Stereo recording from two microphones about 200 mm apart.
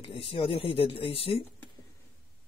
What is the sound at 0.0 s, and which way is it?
Speech, 25° left (ahead or behind).